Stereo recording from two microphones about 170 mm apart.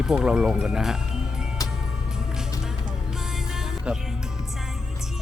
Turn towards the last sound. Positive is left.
turn(degrees=-5)  # may be behind; listen again after turning